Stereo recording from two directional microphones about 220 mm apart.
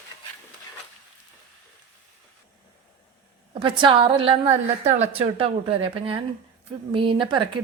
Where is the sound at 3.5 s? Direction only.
20° right (ahead or behind).